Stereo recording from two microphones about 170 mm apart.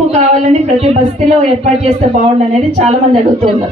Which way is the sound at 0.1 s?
45° right (ahead or behind).